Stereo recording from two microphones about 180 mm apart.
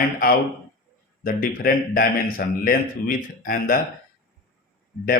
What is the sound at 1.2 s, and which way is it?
Speech, 50° left (ahead or behind).